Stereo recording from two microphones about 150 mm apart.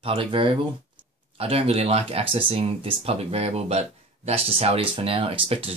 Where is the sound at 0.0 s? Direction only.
35° right (ahead or behind).